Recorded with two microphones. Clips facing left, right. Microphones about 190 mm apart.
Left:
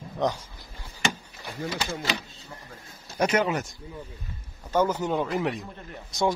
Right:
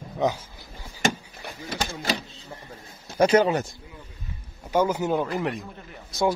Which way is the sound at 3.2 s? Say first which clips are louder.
Right 5 dB; 30° right (ahead or behind).